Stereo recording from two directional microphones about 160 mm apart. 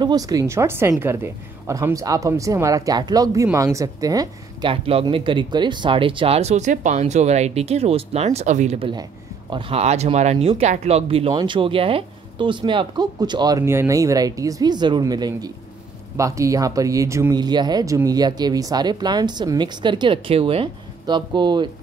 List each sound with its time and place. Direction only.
0.0 s a woman's voice: 25° right (ahead or behind); by 8.7 s 45° right (ahead or behind)
8.7 s a woman's voice: 35° right (ahead or behind)